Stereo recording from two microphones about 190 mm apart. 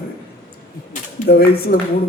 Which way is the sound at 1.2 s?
55° left (ahead or behind).